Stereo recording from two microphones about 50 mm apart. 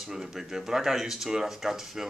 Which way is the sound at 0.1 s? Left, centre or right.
Centre.